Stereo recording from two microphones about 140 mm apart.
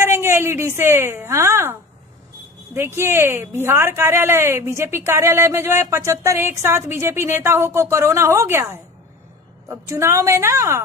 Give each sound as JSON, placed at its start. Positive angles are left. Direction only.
{"t": 0.0, "sound": "a woman's voice", "side_deg": -15}